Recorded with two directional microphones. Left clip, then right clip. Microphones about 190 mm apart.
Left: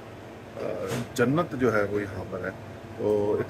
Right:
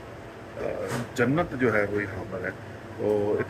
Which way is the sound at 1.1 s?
20° left (ahead or behind).